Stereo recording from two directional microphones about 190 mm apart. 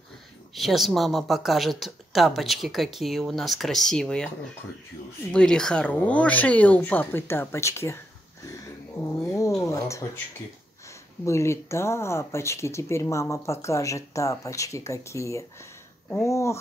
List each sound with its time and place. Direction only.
0.6 s a woman's voice: centre (ahead or behind)
5.3 s speech: 5° left (ahead or behind)
9.2 s speech: 15° left (ahead or behind)
11.2 s speech: 15° left (ahead or behind)